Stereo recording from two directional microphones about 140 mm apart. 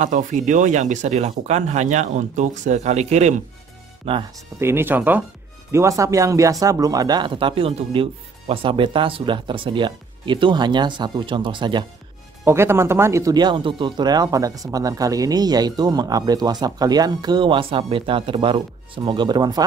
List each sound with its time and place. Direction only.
0.0 s speech: 65° right (ahead or behind); by 4.2 s 45° right (ahead or behind)
4.6 s speech: 15° right (ahead or behind); by 11.8 s 35° right (ahead or behind)
12.4 s speech: 20° right (ahead or behind)